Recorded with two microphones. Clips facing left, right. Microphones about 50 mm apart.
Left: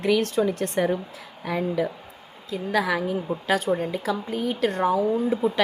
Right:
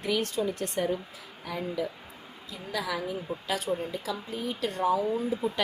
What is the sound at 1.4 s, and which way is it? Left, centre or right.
Speech, left.